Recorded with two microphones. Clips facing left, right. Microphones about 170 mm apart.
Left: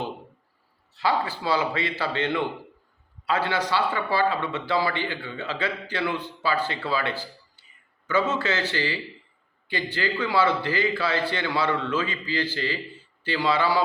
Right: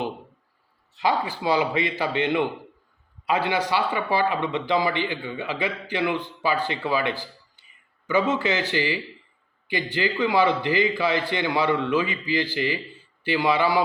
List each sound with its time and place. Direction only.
0.9 s a man's voice: 15° right (ahead or behind)